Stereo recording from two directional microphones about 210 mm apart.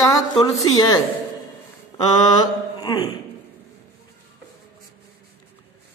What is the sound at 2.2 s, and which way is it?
Mantra, 20° left (ahead or behind).